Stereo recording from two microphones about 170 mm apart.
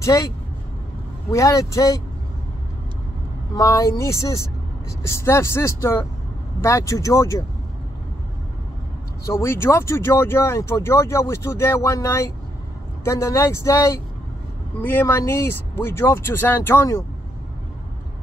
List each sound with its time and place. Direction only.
0.0 s speech: 20° left (ahead or behind)
1.3 s speech: 20° left (ahead or behind)
3.5 s speech: 20° left (ahead or behind)
9.2 s speech: 15° left (ahead or behind)